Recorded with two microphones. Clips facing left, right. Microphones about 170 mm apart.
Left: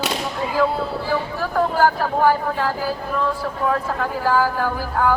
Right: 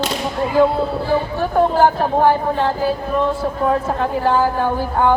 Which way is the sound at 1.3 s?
25° right (ahead or behind).